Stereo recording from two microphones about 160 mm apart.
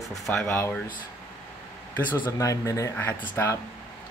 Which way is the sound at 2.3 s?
20° left (ahead or behind).